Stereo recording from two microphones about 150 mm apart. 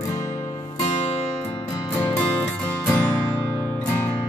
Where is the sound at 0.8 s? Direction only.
45° left (ahead or behind).